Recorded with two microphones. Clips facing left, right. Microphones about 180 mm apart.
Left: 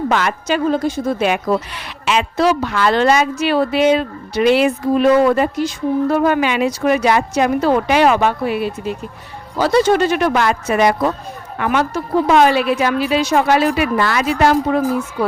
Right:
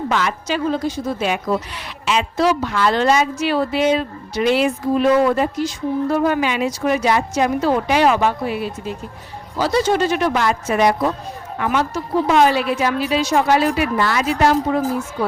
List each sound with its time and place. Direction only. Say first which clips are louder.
0.1 s a woman's voice: left 3 dB; 55° left (ahead or behind)